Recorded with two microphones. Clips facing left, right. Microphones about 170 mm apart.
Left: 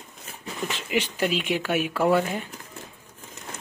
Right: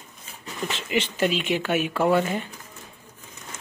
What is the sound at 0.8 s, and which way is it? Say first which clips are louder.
Speech: right 2 dB; 5° left (ahead or behind).